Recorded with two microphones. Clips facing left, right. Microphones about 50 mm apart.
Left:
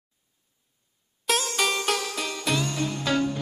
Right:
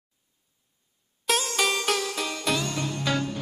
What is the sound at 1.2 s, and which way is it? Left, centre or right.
Music, centre.